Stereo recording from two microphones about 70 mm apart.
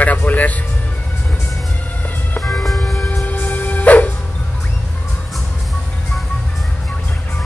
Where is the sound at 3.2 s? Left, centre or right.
Left.